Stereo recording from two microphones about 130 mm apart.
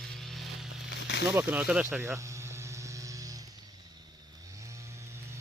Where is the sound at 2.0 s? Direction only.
20° right (ahead or behind).